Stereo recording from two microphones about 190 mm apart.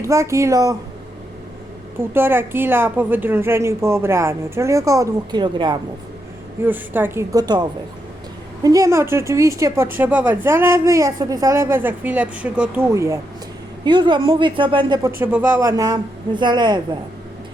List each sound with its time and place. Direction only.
0.0 s speech: 15° right (ahead or behind)
2.1 s speech: 10° right (ahead or behind)
6.7 s a woman's voice: 10° right (ahead or behind)
15.2 s a woman's voice: 10° right (ahead or behind)